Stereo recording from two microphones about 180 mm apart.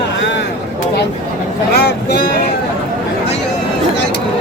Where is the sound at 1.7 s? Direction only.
65° left (ahead or behind).